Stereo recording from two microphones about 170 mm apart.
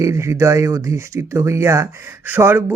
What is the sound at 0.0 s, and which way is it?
Speech, 15° right (ahead or behind).